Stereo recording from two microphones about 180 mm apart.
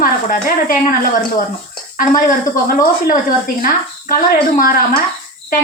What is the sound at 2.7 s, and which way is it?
A woman's voice, 50° left (ahead or behind).